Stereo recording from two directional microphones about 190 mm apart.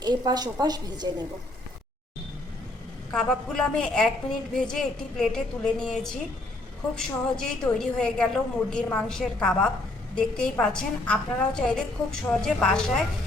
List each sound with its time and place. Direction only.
0.0 s a woman's voice: 20° right (ahead or behind)
3.1 s a woman's voice: 5° left (ahead or behind)